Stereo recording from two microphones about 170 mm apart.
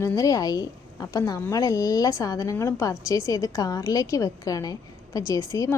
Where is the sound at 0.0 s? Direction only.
20° left (ahead or behind).